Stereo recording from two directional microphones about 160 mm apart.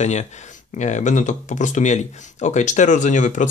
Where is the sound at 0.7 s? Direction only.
45° left (ahead or behind).